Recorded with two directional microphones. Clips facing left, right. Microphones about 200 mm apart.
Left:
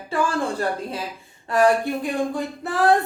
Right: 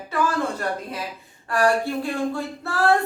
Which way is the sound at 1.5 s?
20° left (ahead or behind).